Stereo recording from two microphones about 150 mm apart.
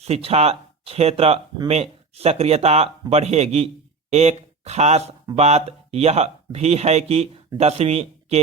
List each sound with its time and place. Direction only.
0.0 s speech: 40° right (ahead or behind)